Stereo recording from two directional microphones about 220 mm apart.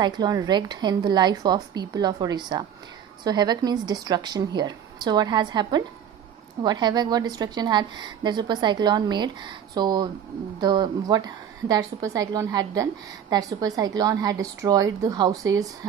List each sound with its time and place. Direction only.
0.0 s a woman's voice: 15° right (ahead or behind)